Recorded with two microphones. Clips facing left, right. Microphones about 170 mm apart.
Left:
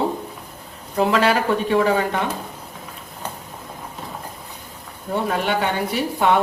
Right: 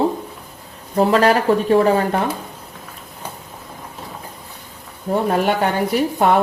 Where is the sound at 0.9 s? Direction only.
40° right (ahead or behind).